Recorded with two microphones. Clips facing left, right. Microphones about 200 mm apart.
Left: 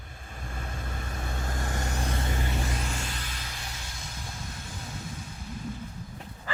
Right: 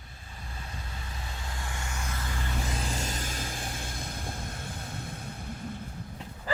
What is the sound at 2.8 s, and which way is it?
Vehicle, 40° right (ahead or behind).